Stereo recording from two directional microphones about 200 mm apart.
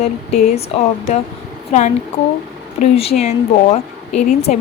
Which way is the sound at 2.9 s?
30° left (ahead or behind).